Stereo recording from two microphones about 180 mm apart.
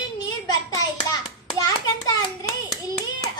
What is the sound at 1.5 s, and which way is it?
Hands, 20° left (ahead or behind).